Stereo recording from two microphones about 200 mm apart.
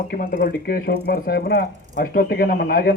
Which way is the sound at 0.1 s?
50° left (ahead or behind).